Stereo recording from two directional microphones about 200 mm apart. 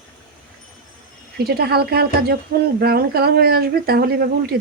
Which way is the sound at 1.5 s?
50° right (ahead or behind).